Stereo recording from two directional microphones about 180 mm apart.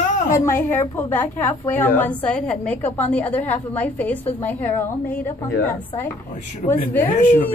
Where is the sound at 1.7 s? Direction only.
10° left (ahead or behind).